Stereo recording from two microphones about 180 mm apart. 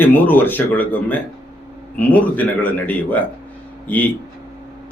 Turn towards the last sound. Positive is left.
turn(degrees=10)  # may be behind; listen again after turning